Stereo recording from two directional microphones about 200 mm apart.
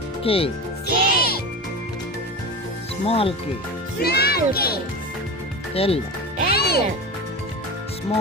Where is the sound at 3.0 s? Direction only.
30° left (ahead or behind).